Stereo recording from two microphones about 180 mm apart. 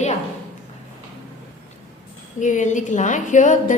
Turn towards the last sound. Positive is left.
turn(degrees=45)  # may be behind; listen again after turning